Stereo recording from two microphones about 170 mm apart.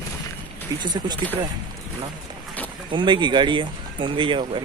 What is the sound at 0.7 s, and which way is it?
Speech, 25° right (ahead or behind).